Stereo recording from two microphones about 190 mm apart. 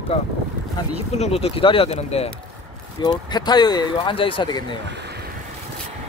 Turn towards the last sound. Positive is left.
turn(degrees=25)  # may be behind; listen again after turning